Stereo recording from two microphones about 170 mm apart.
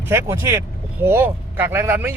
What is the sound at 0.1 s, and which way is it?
Speech, 15° right (ahead or behind).